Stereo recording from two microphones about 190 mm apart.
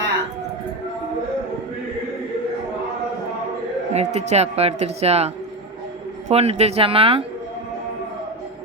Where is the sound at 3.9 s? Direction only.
35° right (ahead or behind).